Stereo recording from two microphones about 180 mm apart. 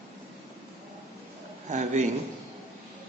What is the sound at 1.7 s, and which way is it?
Speech, 40° right (ahead or behind).